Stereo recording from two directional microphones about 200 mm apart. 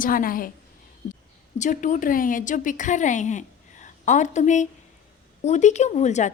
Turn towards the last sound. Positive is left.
turn(degrees=35)  # may be behind; listen again after turning